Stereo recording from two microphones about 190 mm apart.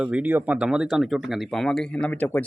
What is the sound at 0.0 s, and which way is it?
Speech, 5° right (ahead or behind).